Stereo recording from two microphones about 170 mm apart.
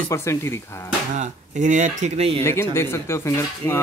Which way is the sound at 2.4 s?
15° left (ahead or behind).